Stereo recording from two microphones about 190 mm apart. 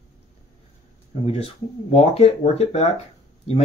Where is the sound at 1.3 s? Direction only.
30° left (ahead or behind).